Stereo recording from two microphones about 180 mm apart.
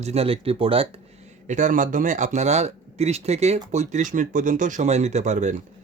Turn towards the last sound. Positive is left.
turn(degrees=-40)  # may be behind; listen again after turning